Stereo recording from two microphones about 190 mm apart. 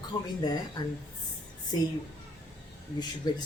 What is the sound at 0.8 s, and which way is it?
Speech, 20° left (ahead or behind).